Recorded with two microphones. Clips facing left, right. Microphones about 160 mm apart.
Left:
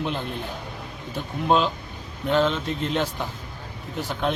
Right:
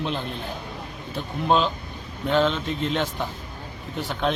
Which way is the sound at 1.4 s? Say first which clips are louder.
Even; centre (ahead or behind).